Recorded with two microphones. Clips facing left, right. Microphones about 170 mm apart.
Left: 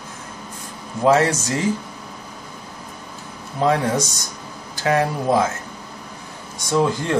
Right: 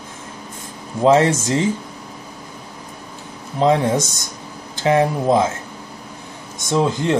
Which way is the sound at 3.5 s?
20° right (ahead or behind).